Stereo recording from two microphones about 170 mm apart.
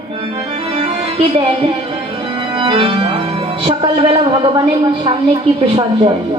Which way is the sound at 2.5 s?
30° right (ahead or behind).